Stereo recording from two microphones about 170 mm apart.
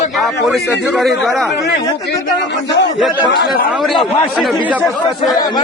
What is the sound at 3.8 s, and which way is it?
Speech, centre (ahead or behind).